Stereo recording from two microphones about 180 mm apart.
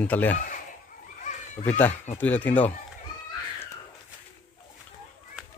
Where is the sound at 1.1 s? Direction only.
40° left (ahead or behind).